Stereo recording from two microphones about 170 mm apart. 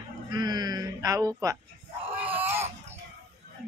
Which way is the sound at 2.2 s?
10° right (ahead or behind).